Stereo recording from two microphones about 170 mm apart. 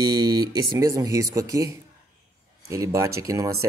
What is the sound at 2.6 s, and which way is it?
Speech, 15° right (ahead or behind).